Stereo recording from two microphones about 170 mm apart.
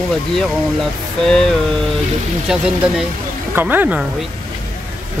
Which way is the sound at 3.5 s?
10° right (ahead or behind).